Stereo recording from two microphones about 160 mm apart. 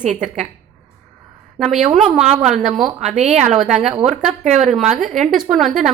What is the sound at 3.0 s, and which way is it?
Speech, 50° right (ahead or behind).